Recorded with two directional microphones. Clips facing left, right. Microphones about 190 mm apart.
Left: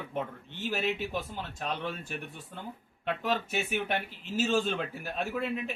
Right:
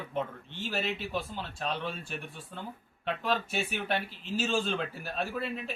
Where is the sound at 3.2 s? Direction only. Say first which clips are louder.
Even; 15° left (ahead or behind).